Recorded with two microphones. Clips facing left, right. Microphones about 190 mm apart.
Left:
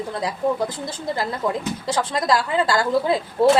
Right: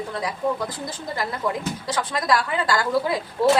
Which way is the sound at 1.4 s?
25° left (ahead or behind).